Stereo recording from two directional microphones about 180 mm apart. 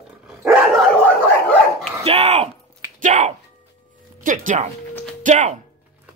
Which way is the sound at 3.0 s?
45° right (ahead or behind).